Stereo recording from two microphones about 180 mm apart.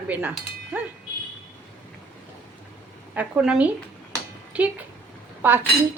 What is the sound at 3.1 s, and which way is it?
Cutlery, 5° right (ahead or behind).